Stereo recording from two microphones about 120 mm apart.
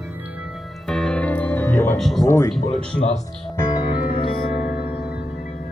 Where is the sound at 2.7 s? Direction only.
70° left (ahead or behind).